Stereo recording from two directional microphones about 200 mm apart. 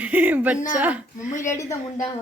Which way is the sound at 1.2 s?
40° left (ahead or behind).